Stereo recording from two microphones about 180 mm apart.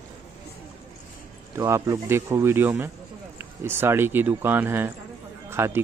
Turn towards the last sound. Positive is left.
turn(degrees=-15)  # may be behind; listen again after turning